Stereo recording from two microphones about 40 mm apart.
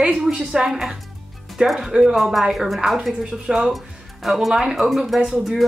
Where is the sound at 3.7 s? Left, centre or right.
Centre.